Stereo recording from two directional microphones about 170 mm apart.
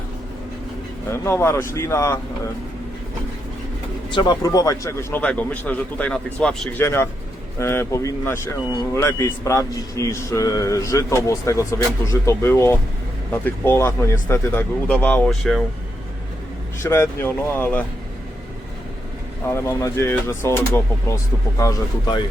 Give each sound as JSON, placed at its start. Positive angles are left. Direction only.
{"t": 1.1, "sound": "speech", "side_deg": 15}
{"t": 4.1, "sound": "speech", "side_deg": 25}
{"t": 16.8, "sound": "speech", "side_deg": 15}
{"t": 19.5, "sound": "speech", "side_deg": 15}